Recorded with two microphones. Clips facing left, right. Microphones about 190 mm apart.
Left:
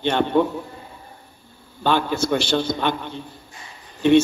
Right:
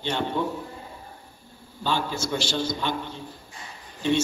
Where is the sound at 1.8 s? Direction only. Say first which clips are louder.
Left 7 dB; 60° left (ahead or behind).